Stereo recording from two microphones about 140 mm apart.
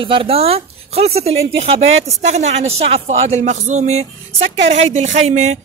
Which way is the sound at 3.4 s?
55° right (ahead or behind).